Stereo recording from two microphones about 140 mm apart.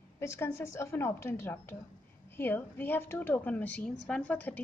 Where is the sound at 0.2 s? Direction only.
20° left (ahead or behind).